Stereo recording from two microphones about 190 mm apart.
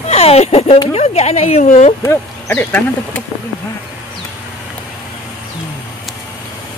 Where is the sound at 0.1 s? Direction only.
35° left (ahead or behind).